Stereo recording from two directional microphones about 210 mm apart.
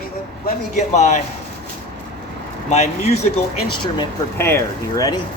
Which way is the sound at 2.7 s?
30° left (ahead or behind).